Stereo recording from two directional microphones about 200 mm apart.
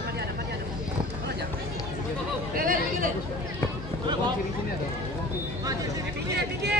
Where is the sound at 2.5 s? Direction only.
45° right (ahead or behind).